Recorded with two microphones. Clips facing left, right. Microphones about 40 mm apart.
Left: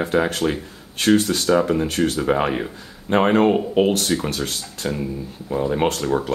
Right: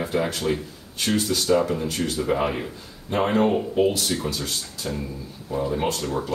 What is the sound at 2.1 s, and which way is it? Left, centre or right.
Speech, left.